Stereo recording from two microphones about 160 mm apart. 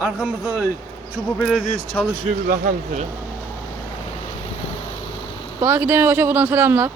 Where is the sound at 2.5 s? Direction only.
55° right (ahead or behind).